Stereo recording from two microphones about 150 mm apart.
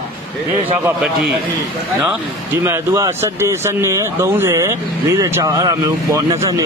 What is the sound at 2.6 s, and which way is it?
Speech, 15° right (ahead or behind).